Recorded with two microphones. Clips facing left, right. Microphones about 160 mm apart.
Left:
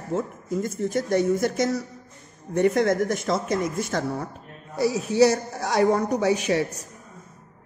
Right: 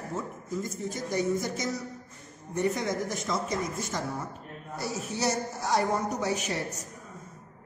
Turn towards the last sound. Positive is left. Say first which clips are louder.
# left 9 dB
turn(degrees=75)  # may be behind; listen again after turning